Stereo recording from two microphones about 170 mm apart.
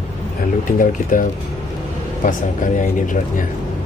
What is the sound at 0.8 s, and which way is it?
Speech, 50° left (ahead or behind).